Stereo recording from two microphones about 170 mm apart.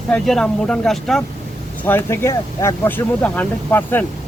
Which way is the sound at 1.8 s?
10° left (ahead or behind).